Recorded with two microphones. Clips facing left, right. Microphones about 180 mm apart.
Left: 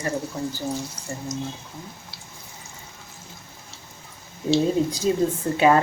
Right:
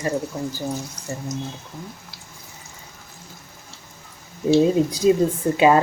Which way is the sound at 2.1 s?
25° left (ahead or behind).